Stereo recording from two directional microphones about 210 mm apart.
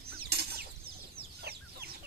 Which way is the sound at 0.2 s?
50° right (ahead or behind).